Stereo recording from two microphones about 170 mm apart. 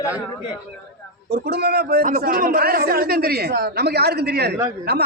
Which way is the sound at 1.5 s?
70° right (ahead or behind).